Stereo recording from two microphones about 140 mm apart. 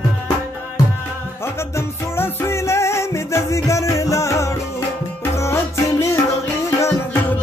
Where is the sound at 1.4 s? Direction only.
20° left (ahead or behind).